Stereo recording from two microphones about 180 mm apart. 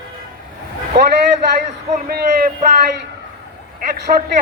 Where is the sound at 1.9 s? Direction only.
50° right (ahead or behind).